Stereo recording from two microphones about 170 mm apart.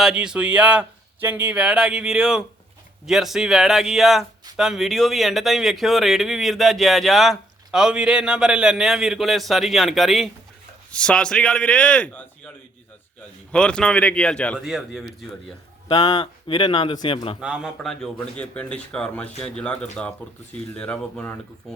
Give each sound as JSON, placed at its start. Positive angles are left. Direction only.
{"t": 0.0, "sound": "speech", "side_deg": -5}
{"t": 13.5, "sound": "speech", "side_deg": 5}
{"t": 14.6, "sound": "speech", "side_deg": -5}
{"t": 15.9, "sound": "speech", "side_deg": 25}
{"t": 17.4, "sound": "speech", "side_deg": -5}